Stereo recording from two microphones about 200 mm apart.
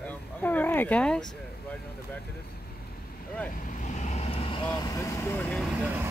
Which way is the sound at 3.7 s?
35° left (ahead or behind).